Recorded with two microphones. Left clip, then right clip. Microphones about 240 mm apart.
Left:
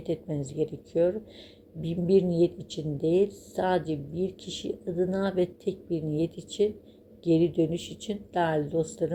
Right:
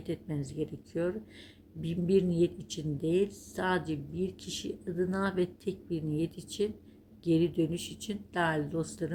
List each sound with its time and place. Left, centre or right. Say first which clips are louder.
0.0 s speech: left 6 dB; centre